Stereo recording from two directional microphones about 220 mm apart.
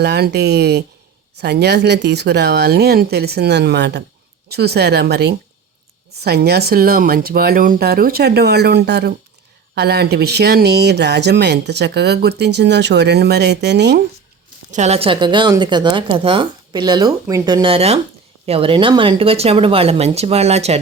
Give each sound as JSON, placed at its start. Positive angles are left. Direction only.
{"t": 0.0, "sound": "speech", "side_deg": -50}
{"t": 14.7, "sound": "a woman's voice", "side_deg": -30}